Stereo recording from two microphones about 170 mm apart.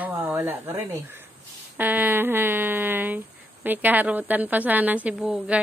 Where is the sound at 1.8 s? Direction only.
10° right (ahead or behind).